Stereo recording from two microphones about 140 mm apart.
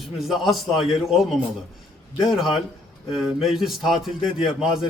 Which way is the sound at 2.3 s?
Centre (ahead or behind).